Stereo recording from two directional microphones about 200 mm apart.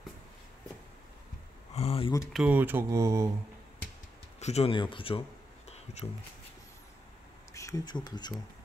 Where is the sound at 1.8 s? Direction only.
30° left (ahead or behind).